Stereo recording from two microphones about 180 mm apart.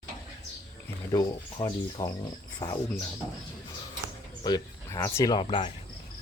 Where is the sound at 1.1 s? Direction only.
20° left (ahead or behind).